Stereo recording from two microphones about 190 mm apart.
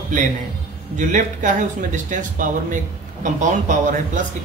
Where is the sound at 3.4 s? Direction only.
40° right (ahead or behind).